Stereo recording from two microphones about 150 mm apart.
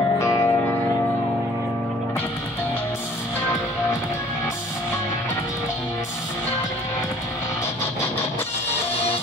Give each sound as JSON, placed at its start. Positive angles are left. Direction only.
{"t": 0.2, "sound": "music", "side_deg": 20}